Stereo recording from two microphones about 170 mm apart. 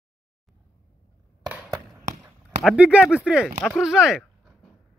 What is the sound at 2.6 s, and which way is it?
Speech, 5° right (ahead or behind).